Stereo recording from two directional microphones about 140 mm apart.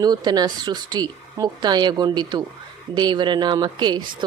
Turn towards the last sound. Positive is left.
turn(degrees=-30)  # may be behind; listen again after turning